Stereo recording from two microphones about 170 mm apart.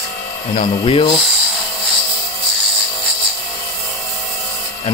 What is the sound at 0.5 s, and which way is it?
Speech, 30° left (ahead or behind).